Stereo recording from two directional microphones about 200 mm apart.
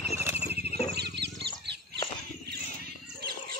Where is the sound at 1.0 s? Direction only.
55° right (ahead or behind).